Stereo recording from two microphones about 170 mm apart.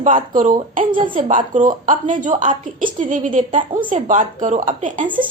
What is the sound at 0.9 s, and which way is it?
Speech, 30° right (ahead or behind).